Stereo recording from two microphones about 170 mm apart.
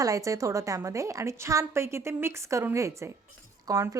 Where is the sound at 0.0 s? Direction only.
20° right (ahead or behind).